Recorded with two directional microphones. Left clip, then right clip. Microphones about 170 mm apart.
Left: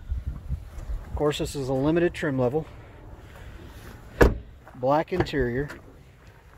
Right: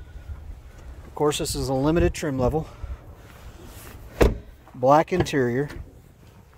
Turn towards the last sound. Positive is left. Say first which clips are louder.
# right 3 dB
turn(degrees=-30)  # may be behind; listen again after turning